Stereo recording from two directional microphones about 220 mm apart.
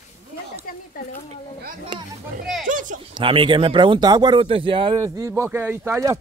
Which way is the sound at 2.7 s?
35° right (ahead or behind).